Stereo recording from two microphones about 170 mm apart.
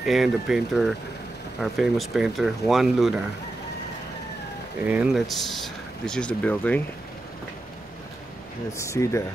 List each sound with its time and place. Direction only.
0.0 s speech: centre (ahead or behind)
4.8 s speech: 5° right (ahead or behind); by 6.8 s 10° left (ahead or behind)
8.7 s speech: 15° left (ahead or behind)